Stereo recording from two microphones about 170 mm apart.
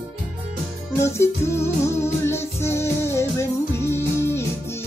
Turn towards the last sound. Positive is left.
turn(degrees=15)  # may be behind; listen again after turning